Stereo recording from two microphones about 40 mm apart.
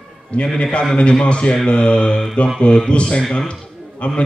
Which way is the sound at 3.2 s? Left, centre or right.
Centre.